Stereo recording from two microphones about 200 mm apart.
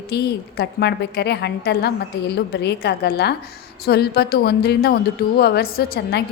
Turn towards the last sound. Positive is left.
turn(degrees=55)  # may be behind; listen again after turning